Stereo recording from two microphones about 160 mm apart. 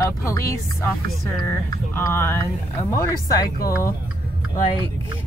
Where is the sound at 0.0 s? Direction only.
20° left (ahead or behind).